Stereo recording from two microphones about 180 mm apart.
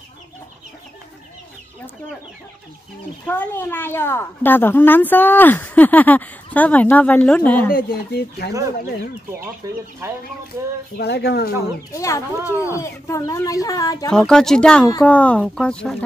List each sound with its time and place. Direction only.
3.3 s a woman's voice: 10° left (ahead or behind)
7.7 s speech: 65° left (ahead or behind)
11.0 s speech: 65° left (ahead or behind)
11.9 s a woman's voice: 15° left (ahead or behind)
12.4 s speech: 10° right (ahead or behind)
12.6 s speech: 15° left (ahead or behind)
14.1 s speech: 5° left (ahead or behind)